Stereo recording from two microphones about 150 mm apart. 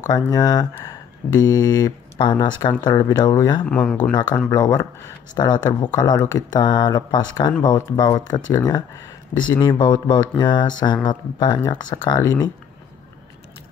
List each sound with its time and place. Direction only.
0.1 s speech: 25° left (ahead or behind)
3.6 s speech: 5° left (ahead or behind)
4.1 s speech: 30° left (ahead or behind)